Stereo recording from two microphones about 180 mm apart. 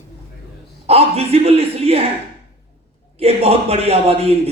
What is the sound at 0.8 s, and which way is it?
A woman's voice, 35° right (ahead or behind).